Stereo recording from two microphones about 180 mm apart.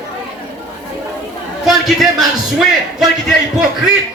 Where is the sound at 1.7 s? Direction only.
Centre (ahead or behind).